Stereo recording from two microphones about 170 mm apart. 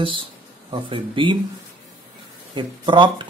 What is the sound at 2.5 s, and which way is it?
Speech, 30° right (ahead or behind).